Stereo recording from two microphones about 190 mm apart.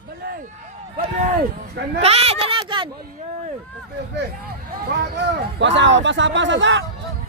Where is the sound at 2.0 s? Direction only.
35° right (ahead or behind).